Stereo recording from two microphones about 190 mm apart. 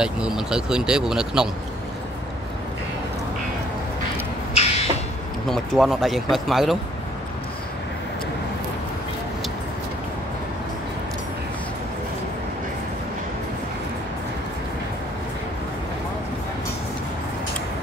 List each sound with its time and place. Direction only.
0.0 s speech: 5° right (ahead or behind)
4.6 s a sound: 35° left (ahead or behind)
5.5 s speech: centre (ahead or behind)